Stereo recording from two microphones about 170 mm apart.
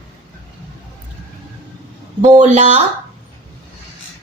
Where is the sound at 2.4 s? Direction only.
40° right (ahead or behind).